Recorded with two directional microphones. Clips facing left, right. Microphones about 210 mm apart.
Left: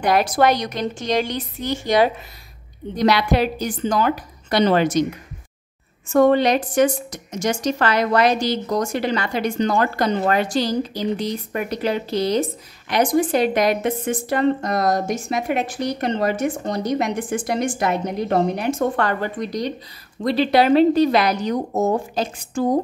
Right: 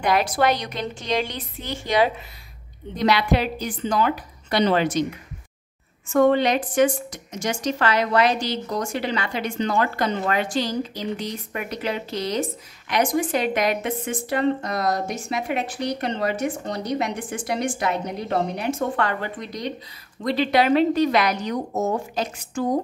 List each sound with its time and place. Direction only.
0.1 s a woman's voice: 45° left (ahead or behind)
6.1 s a woman's voice: 40° left (ahead or behind)